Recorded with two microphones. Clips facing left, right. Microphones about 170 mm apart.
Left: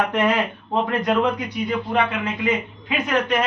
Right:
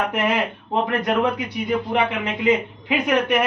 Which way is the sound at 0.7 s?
15° right (ahead or behind).